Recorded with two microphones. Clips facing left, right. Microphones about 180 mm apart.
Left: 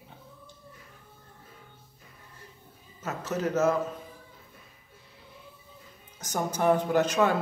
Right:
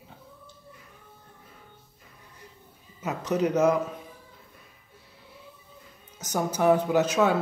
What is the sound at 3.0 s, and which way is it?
Speech, 15° right (ahead or behind).